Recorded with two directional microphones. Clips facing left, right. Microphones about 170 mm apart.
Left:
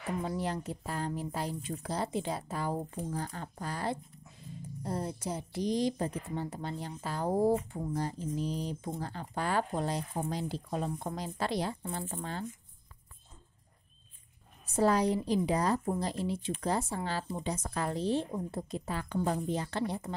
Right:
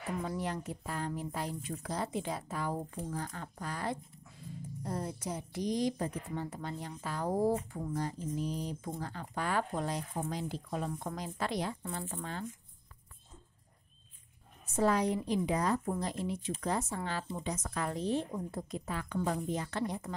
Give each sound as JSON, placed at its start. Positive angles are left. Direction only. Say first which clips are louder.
{"t": 0.2, "sound": "speech", "louder": "left 2 dB", "side_deg": 30}
{"t": 14.8, "sound": "speech", "louder": "left 2 dB", "side_deg": 35}